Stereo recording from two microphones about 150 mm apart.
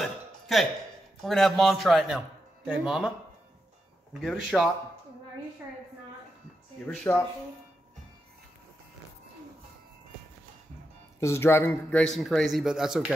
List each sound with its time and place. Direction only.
0.0 s a sound: centre (ahead or behind)
1.2 s a man's voice: centre (ahead or behind)
4.2 s a man's voice: centre (ahead or behind)
6.9 s speech: 10° left (ahead or behind)
11.1 s speech: 15° left (ahead or behind)
12.0 s a man's voice: centre (ahead or behind)